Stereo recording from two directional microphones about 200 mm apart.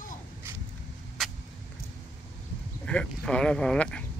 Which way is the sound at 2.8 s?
5° left (ahead or behind).